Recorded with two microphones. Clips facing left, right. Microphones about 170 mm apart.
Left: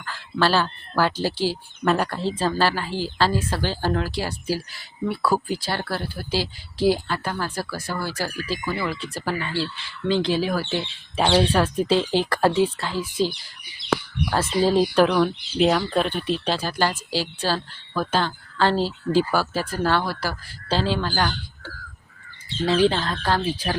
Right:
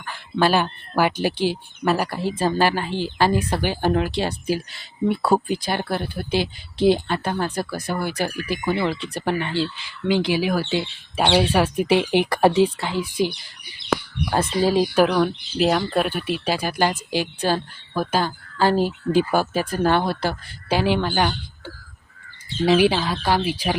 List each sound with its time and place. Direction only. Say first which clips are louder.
0.0 s a sound: right 2 dB; 15° right (ahead or behind)
1.2 s speech: right 2 dB; 20° right (ahead or behind)
1.8 s speech: even; 5° right (ahead or behind)
22.6 s speech: right 2 dB; 15° right (ahead or behind)